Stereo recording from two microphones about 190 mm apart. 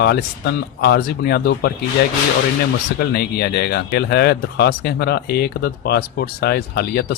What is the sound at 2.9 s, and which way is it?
Speech, 60° left (ahead or behind).